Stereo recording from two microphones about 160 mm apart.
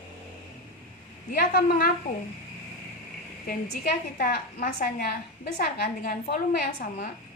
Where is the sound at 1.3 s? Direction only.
60° left (ahead or behind).